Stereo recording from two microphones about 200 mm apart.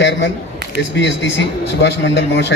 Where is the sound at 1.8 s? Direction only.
60° left (ahead or behind).